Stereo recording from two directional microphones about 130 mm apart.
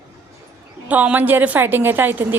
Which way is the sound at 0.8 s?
10° right (ahead or behind).